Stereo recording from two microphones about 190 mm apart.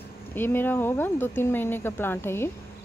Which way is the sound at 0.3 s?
10° left (ahead or behind).